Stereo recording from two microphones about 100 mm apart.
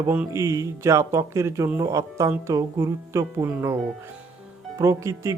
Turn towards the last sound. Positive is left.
turn(degrees=-30)  # may be behind; listen again after turning